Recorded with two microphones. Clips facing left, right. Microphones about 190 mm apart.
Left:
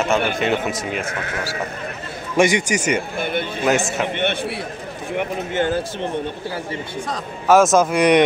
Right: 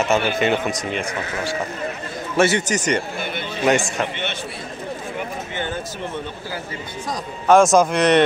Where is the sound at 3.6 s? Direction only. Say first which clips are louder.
Right 1 dB; centre (ahead or behind).